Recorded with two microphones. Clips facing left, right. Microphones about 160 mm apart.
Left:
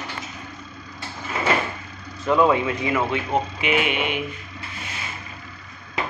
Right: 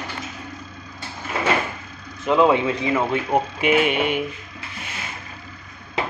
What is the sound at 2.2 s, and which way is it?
Speech, 20° right (ahead or behind).